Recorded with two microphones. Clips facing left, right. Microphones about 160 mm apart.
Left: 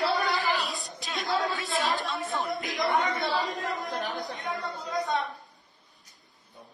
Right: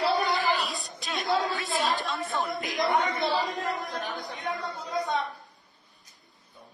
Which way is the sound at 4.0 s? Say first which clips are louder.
Left 2 dB; 40° left (ahead or behind).